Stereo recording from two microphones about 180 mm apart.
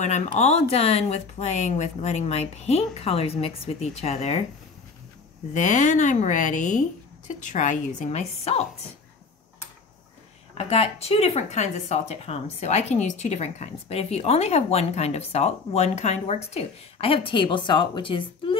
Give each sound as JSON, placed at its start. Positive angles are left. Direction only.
{"t": 0.0, "sound": "speech", "side_deg": 40}
{"t": 5.5, "sound": "speech", "side_deg": 45}
{"t": 10.6, "sound": "speech", "side_deg": 35}